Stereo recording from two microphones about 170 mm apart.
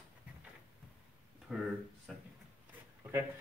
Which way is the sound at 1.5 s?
5° right (ahead or behind).